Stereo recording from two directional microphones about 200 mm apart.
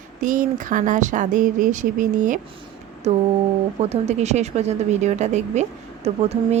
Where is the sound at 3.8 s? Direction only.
35° right (ahead or behind).